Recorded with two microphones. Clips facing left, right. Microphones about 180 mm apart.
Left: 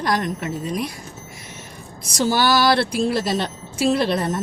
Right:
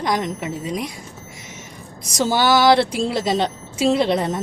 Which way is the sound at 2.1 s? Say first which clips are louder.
Right 1 dB; 20° right (ahead or behind).